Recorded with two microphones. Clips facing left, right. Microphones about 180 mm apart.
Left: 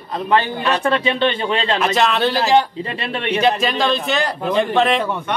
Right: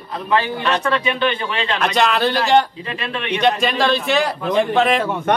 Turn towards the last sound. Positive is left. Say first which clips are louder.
# even
turn(degrees=0)  # may be behind; listen again after turning